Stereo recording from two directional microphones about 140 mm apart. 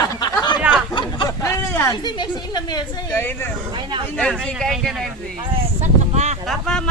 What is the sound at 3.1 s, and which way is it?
Speech, 15° left (ahead or behind).